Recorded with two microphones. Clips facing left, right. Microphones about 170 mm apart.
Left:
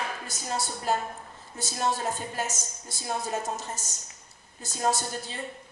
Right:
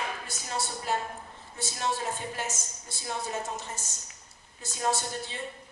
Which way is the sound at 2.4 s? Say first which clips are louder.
Left 3 dB; 40° left (ahead or behind).